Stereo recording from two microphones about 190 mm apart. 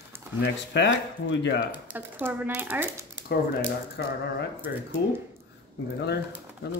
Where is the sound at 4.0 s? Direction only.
65° left (ahead or behind).